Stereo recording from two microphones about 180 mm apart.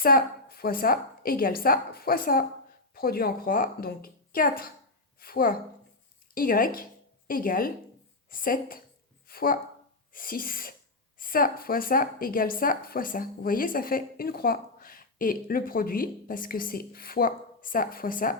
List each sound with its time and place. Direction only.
0.0 s a woman's voice: 55° left (ahead or behind)